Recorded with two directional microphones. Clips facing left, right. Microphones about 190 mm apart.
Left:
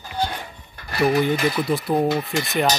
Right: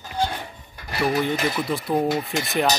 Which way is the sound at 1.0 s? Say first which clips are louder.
Left 3 dB; centre (ahead or behind).